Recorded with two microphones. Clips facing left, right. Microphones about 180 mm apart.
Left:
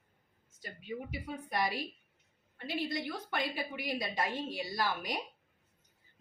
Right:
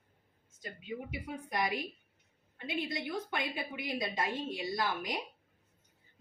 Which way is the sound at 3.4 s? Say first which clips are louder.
Left 1 dB; 20° right (ahead or behind).